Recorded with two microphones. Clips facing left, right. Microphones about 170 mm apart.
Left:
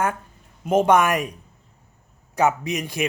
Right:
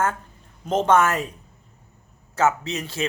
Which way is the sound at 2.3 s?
15° left (ahead or behind).